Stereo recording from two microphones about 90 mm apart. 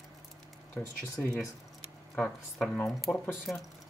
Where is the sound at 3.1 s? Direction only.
20° left (ahead or behind).